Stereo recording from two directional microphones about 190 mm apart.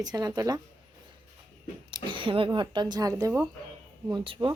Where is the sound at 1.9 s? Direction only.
25° right (ahead or behind).